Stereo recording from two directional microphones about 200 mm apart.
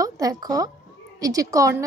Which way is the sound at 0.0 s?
20° right (ahead or behind).